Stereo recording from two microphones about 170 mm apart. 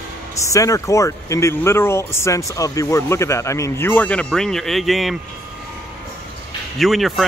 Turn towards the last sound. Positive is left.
turn(degrees=0)  # may be behind; listen again after turning